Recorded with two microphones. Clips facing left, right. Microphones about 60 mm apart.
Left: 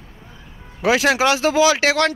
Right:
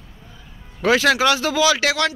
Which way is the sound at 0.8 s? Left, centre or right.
Centre.